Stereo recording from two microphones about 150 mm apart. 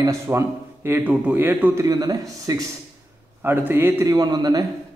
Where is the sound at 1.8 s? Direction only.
25° right (ahead or behind).